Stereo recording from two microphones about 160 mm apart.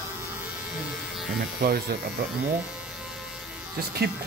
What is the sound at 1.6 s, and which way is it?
Speech, 70° right (ahead or behind).